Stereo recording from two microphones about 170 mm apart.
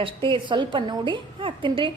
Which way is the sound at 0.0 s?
30° right (ahead or behind).